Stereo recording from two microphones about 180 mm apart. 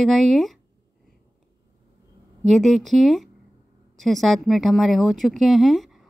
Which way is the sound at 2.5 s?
Centre (ahead or behind).